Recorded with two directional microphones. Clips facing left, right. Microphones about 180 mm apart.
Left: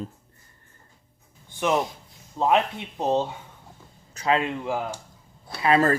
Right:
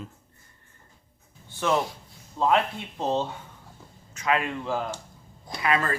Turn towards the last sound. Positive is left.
turn(degrees=35)  # may be behind; listen again after turning